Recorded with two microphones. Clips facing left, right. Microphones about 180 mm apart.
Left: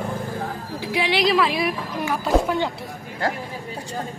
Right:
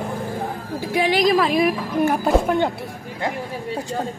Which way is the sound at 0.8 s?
45° right (ahead or behind).